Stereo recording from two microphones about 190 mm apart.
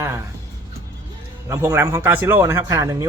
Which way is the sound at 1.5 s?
15° right (ahead or behind).